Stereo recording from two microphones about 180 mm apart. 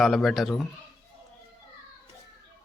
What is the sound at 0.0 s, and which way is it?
Speech, centre (ahead or behind).